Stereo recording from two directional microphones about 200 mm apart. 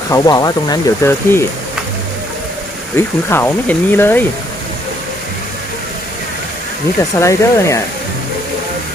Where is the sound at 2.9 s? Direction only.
10° left (ahead or behind).